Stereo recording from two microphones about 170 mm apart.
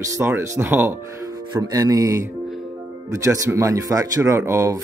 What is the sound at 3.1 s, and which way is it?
Speech, 20° right (ahead or behind).